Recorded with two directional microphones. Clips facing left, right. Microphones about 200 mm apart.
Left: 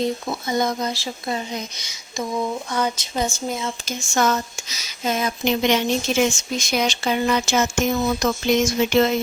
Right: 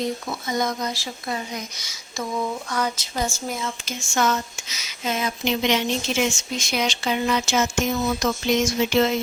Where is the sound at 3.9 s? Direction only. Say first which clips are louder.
Left 2 dB; 45° left (ahead or behind).